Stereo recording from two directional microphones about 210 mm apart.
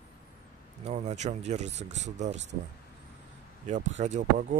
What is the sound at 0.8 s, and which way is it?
Speech, 30° right (ahead or behind).